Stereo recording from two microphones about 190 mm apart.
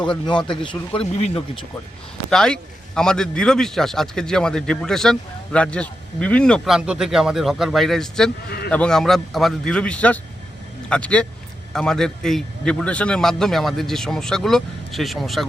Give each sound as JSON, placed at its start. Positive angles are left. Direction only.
{"t": 0.6, "sound": "speech", "side_deg": 25}
{"t": 2.3, "sound": "a man's voice", "side_deg": 5}
{"t": 8.4, "sound": "a man's voice", "side_deg": 55}
{"t": 8.7, "sound": "a man's voice", "side_deg": 5}